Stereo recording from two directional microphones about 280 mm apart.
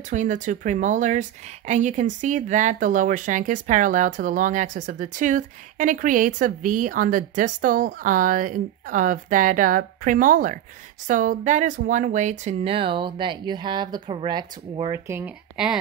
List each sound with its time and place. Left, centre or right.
0.1 s speech: right; by 15.8 s centre